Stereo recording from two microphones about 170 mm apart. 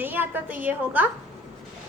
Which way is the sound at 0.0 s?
10° right (ahead or behind).